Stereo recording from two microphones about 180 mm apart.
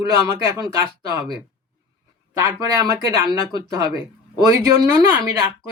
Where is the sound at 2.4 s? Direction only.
15° right (ahead or behind).